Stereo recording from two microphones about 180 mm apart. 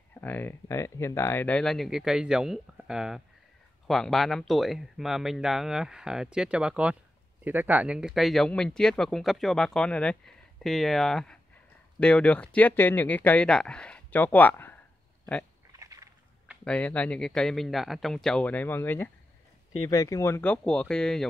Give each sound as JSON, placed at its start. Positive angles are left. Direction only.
{"t": 0.1, "sound": "speech", "side_deg": 10}
{"t": 15.8, "sound": "a sound", "side_deg": -15}
{"t": 16.6, "sound": "speech", "side_deg": 5}